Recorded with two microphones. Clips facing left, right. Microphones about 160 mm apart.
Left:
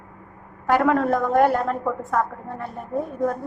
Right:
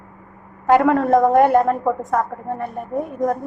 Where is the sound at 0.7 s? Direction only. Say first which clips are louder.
Right 5 dB; 15° right (ahead or behind).